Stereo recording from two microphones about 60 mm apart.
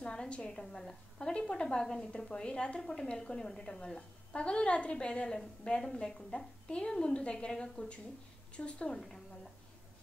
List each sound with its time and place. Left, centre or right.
0.0 s a woman's voice: centre